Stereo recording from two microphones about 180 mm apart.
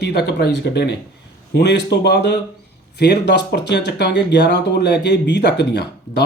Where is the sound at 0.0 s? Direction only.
65° left (ahead or behind).